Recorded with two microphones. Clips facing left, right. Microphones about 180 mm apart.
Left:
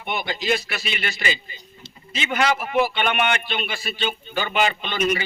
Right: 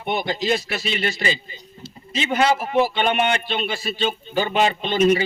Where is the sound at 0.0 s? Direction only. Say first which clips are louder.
Right 4 dB; 35° right (ahead or behind).